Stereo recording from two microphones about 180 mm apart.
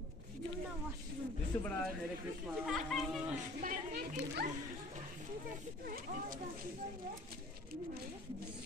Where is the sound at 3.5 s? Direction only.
55° right (ahead or behind).